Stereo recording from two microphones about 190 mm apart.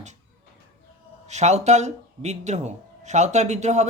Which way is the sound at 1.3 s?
35° right (ahead or behind).